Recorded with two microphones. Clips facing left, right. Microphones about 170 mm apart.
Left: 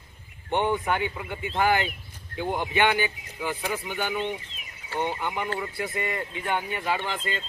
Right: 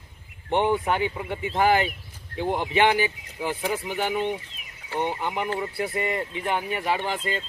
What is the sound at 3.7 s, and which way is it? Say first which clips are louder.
Speech: right 5 dB; 35° right (ahead or behind).